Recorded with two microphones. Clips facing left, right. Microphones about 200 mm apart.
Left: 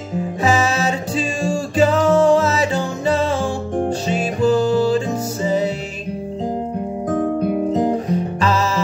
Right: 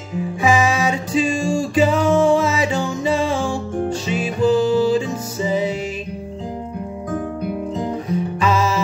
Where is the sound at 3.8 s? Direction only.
45° left (ahead or behind).